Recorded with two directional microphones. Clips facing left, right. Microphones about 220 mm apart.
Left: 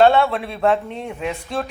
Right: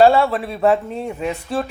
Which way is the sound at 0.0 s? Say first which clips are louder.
Right 1 dB; 5° right (ahead or behind).